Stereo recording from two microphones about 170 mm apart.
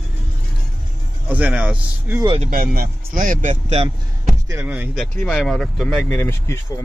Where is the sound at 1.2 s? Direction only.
10° right (ahead or behind).